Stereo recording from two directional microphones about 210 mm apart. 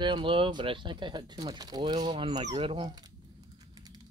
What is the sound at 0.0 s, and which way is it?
Speech, 25° right (ahead or behind).